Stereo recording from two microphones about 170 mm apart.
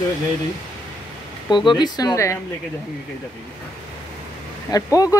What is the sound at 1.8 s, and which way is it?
Speech, 25° left (ahead or behind).